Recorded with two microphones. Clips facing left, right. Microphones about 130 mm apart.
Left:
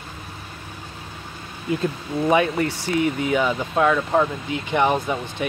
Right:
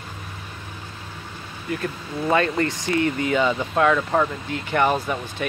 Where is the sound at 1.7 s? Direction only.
20° left (ahead or behind).